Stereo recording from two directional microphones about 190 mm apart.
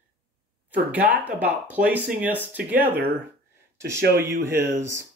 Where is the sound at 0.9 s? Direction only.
10° right (ahead or behind).